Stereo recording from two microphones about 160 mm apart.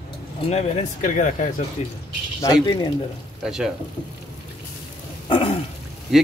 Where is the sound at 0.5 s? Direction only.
45° left (ahead or behind).